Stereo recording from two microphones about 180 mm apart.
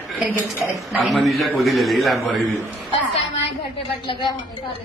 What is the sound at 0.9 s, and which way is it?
Speech, centre (ahead or behind).